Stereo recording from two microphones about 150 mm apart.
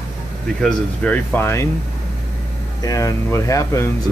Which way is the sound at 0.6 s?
5° left (ahead or behind).